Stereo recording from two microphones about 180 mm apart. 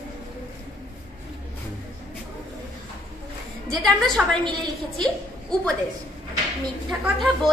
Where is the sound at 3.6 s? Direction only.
Centre (ahead or behind).